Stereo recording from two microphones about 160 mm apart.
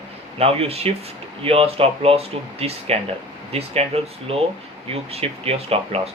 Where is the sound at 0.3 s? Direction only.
40° right (ahead or behind).